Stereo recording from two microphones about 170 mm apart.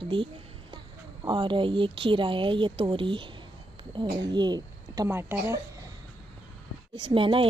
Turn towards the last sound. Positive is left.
turn(degrees=-30)  # may be behind; listen again after turning